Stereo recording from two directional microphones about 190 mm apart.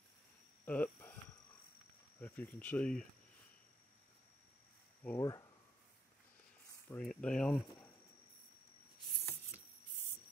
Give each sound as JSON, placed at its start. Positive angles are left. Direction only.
{"t": 0.7, "sound": "speech", "side_deg": 10}
{"t": 2.1, "sound": "speech", "side_deg": 10}
{"t": 5.0, "sound": "speech", "side_deg": 15}
{"t": 6.9, "sound": "speech", "side_deg": 5}